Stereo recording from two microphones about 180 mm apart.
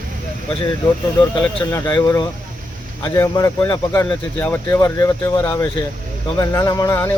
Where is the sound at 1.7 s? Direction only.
20° left (ahead or behind).